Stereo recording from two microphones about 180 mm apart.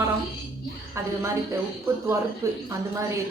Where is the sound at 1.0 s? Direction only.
15° right (ahead or behind).